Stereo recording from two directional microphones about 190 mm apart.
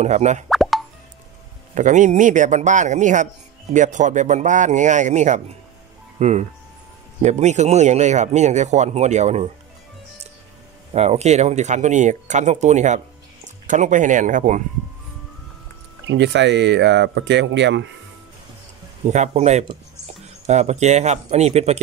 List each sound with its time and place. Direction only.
0.0 s speech: 40° right (ahead or behind)
0.5 s plop: centre (ahead or behind)
1.8 s speech: 40° right (ahead or behind)
10.9 s speech: 35° right (ahead or behind)
16.1 s speech: 70° right (ahead or behind)
19.0 s speech: 35° right (ahead or behind)